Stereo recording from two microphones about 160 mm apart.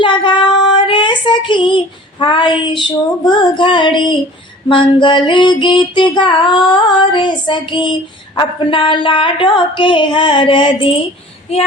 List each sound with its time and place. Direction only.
0.0 s child singing: 30° left (ahead or behind)
4.7 s music: 30° left (ahead or behind)
11.5 s female singing: 40° left (ahead or behind)